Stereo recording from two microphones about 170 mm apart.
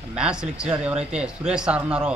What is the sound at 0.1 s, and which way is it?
Speech, 5° right (ahead or behind).